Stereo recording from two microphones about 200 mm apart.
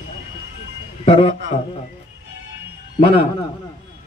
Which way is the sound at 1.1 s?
25° left (ahead or behind).